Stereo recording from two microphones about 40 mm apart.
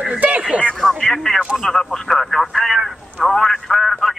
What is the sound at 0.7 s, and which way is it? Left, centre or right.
Radio, centre.